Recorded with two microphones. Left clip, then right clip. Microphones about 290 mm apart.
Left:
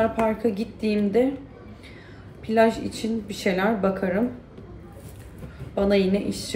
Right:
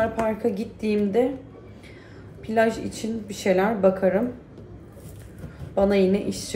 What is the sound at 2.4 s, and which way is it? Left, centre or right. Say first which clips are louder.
A woman's voice: left 2 dB; centre.